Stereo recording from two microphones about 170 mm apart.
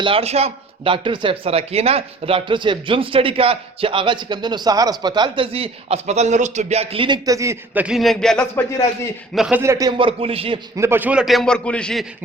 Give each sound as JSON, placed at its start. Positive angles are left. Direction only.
{"t": 0.0, "sound": "a man's voice", "side_deg": -35}
{"t": 10.8, "sound": "a man's voice", "side_deg": -15}